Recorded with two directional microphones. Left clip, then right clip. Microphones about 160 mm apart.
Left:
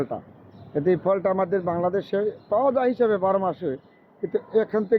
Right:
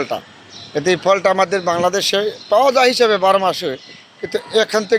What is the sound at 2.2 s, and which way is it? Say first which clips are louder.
Speech: right 9 dB; 50° right (ahead or behind).